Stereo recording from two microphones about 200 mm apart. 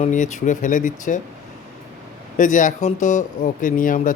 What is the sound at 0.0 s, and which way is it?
Speech, 35° left (ahead or behind).